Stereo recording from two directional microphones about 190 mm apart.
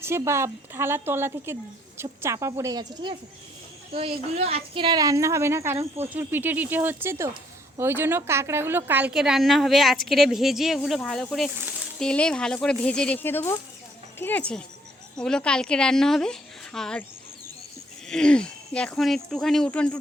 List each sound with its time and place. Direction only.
0.0 s a woman's voice: 15° right (ahead or behind); by 17.1 s 5° left (ahead or behind)
18.1 s a woman's voice: 5° left (ahead or behind)